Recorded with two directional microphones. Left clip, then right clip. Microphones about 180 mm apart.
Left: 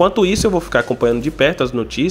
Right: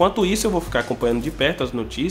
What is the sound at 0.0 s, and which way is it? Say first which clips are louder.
Speech: left 5 dB; 30° left (ahead or behind).